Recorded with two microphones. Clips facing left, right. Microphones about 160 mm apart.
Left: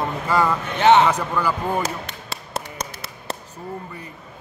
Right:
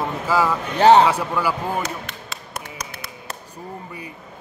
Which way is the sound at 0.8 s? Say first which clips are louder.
Right 2 dB; 35° right (ahead or behind).